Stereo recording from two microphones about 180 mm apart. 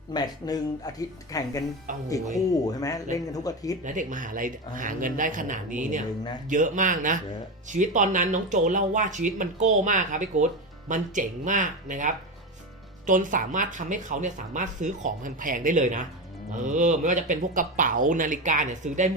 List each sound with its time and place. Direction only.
0.1 s speech: 20° left (ahead or behind)
1.9 s speech: 45° right (ahead or behind)
2.5 s speech: 20° left (ahead or behind)
3.8 s speech: 45° right (ahead or behind)